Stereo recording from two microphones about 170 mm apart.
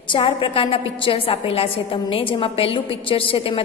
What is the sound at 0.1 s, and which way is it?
A woman's voice, 35° left (ahead or behind).